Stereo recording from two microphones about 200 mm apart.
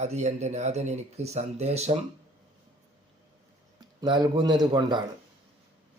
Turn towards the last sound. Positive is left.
turn(degrees=-20)  # may be behind; listen again after turning